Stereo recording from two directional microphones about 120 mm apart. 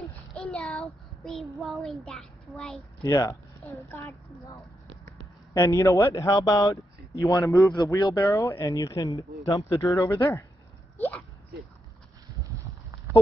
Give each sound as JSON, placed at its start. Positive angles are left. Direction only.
{"t": 0.3, "sound": "child singing", "side_deg": 5}
{"t": 2.0, "sound": "a child's voice", "side_deg": 0}
{"t": 3.0, "sound": "speech", "side_deg": 30}
{"t": 11.0, "sound": "a sound", "side_deg": 15}